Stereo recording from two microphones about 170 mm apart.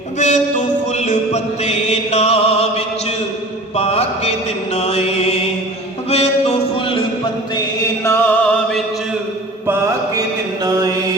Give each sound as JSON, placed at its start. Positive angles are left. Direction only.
{"t": 0.2, "sound": "mantra", "side_deg": 45}
{"t": 6.1, "sound": "a sound", "side_deg": 35}
{"t": 8.0, "sound": "music", "side_deg": 15}
{"t": 9.6, "sound": "mantra", "side_deg": -20}